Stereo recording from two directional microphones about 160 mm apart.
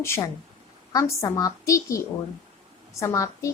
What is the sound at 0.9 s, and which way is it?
A child's voice, 20° left (ahead or behind).